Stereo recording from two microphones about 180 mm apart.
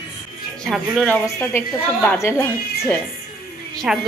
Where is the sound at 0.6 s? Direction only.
Centre (ahead or behind).